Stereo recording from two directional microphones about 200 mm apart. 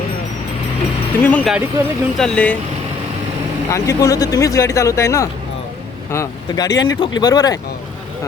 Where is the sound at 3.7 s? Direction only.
15° left (ahead or behind).